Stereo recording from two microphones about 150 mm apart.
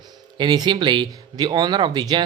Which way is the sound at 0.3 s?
30° right (ahead or behind).